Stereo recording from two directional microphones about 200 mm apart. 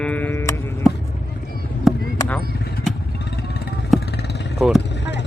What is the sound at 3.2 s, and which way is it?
Vehicle, 55° left (ahead or behind).